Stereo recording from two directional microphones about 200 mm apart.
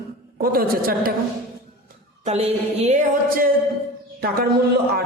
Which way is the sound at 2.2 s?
30° right (ahead or behind).